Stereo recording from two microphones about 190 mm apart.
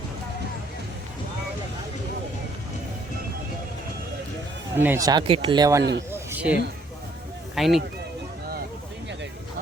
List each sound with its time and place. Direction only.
4.8 s speech: 15° right (ahead or behind)
6.1 s a sound: 10° right (ahead or behind)
7.5 s speech: centre (ahead or behind)